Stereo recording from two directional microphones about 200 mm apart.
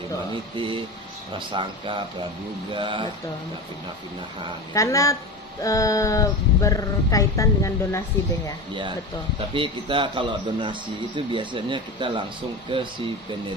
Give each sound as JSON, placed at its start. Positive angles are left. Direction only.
{"t": 0.3, "sound": "a man's voice", "side_deg": -25}
{"t": 4.7, "sound": "speech", "side_deg": 15}
{"t": 9.5, "sound": "a man's voice", "side_deg": -25}